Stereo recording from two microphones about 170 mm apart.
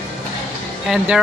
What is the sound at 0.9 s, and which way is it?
Speech, 5° right (ahead or behind).